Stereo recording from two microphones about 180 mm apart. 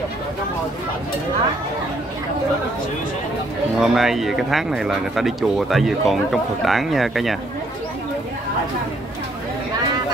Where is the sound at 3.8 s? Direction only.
Centre (ahead or behind).